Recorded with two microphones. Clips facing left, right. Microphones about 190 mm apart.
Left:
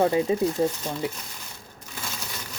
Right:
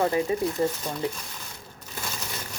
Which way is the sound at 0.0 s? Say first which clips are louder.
Left 3 dB; 20° left (ahead or behind).